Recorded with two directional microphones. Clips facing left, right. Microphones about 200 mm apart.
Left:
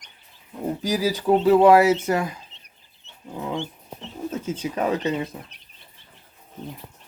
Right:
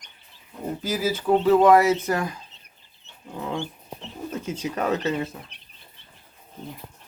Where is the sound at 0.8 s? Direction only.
15° left (ahead or behind).